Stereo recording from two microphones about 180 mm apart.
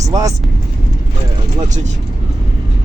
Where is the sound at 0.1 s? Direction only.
20° right (ahead or behind).